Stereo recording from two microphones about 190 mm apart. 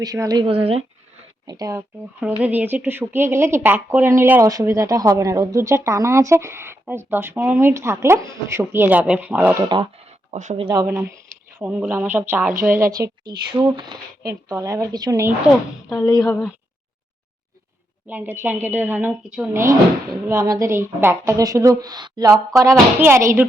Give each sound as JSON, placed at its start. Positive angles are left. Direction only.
{"t": 0.0, "sound": "speech", "side_deg": -20}
{"t": 1.5, "sound": "speech", "side_deg": -20}
{"t": 2.2, "sound": "speech", "side_deg": -10}
{"t": 10.3, "sound": "speech", "side_deg": -35}
{"t": 11.6, "sound": "speech", "side_deg": -5}
{"t": 15.9, "sound": "speech", "side_deg": 15}
{"t": 18.1, "sound": "speech", "side_deg": -10}